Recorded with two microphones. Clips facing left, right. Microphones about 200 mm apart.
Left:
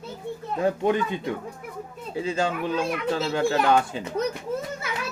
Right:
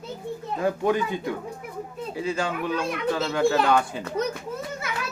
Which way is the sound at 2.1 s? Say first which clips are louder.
Left 2 dB; 25° left (ahead or behind).